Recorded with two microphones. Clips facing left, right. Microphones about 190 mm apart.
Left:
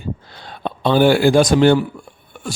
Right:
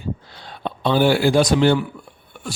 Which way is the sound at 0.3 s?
50° left (ahead or behind).